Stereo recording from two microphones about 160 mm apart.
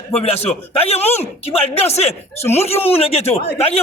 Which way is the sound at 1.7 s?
40° left (ahead or behind).